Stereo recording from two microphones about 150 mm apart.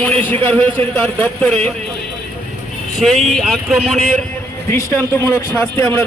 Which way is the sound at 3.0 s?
Centre (ahead or behind).